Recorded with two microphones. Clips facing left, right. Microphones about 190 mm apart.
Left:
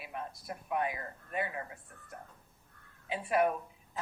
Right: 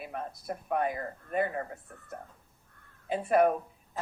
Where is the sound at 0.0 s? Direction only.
45° right (ahead or behind).